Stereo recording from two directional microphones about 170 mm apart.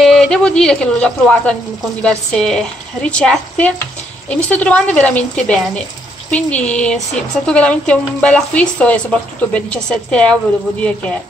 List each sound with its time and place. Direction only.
0.0 s speech: centre (ahead or behind)